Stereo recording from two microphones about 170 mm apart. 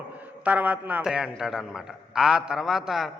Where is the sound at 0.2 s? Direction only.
10° right (ahead or behind).